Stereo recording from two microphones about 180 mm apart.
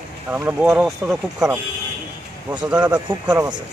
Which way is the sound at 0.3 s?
10° right (ahead or behind).